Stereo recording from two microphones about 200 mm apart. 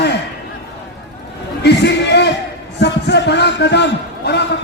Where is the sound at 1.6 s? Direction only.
55° left (ahead or behind).